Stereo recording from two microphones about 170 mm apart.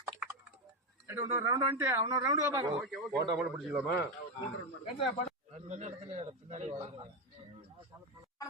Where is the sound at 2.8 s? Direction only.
5° right (ahead or behind).